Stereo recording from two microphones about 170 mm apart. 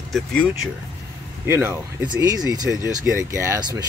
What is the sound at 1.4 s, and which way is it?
Speech, 15° right (ahead or behind).